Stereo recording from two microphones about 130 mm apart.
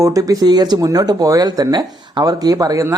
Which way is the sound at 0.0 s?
25° right (ahead or behind).